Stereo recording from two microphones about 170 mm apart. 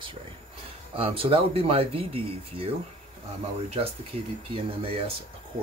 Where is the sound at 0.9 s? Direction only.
35° right (ahead or behind).